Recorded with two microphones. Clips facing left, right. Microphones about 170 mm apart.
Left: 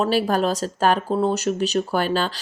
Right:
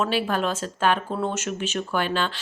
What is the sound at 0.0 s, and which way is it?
Speech, 40° left (ahead or behind).